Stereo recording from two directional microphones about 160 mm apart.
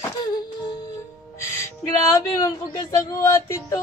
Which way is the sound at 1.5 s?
20° left (ahead or behind).